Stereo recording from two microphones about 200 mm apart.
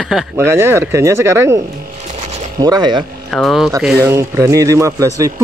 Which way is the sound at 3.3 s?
Centre (ahead or behind).